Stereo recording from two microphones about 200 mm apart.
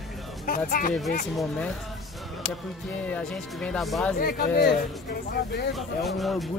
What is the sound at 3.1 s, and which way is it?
Speech, 5° left (ahead or behind).